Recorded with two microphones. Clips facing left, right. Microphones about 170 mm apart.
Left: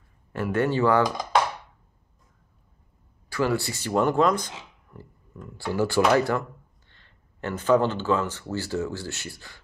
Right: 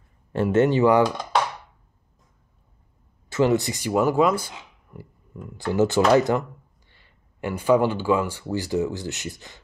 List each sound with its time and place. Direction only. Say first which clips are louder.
0.3 s speech: right 5 dB; 25° right (ahead or behind)
3.3 s speech: right 5 dB; 20° right (ahead or behind)